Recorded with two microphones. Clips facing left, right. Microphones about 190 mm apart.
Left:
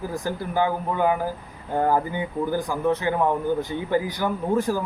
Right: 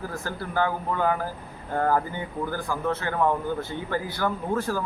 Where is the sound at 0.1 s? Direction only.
15° left (ahead or behind).